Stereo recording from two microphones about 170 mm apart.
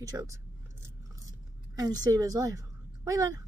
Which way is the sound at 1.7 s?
25° right (ahead or behind).